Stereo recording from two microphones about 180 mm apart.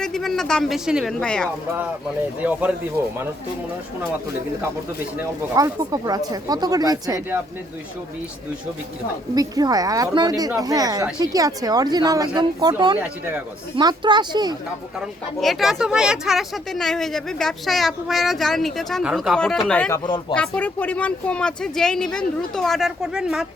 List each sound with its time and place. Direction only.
0.0 s speech: centre (ahead or behind)
2.4 s speech: 10° right (ahead or behind)
5.5 s speech: 20° right (ahead or behind)
9.3 s speech: 20° right (ahead or behind)
13.0 s speech: 10° right (ahead or behind)
13.7 s speech: 25° right (ahead or behind)
15.4 s speech: centre (ahead or behind)